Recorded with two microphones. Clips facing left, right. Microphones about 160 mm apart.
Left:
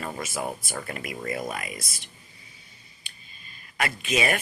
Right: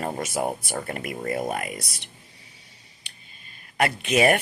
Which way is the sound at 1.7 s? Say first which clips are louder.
Right 3 dB; 70° right (ahead or behind).